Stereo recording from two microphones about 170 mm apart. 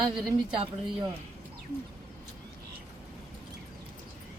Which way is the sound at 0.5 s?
30° right (ahead or behind).